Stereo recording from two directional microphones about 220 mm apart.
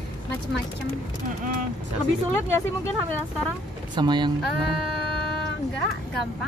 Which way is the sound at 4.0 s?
20° right (ahead or behind).